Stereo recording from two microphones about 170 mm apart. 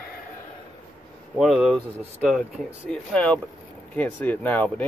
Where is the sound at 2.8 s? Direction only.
5° left (ahead or behind).